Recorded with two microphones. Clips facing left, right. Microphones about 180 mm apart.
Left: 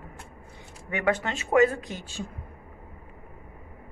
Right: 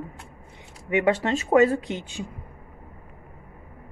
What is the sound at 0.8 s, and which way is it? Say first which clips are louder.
Speech: right 5 dB; 20° right (ahead or behind).